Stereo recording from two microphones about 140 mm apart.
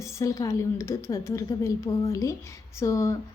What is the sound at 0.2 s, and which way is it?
Speech, 25° left (ahead or behind).